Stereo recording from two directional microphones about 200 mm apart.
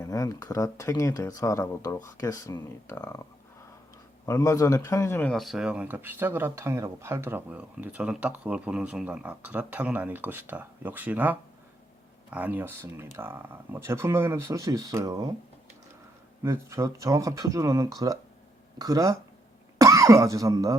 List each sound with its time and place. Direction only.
0.0 s speech: 15° left (ahead or behind)
4.3 s speech: 15° left (ahead or behind); by 15.3 s 20° right (ahead or behind)
16.4 s speech: 15° right (ahead or behind)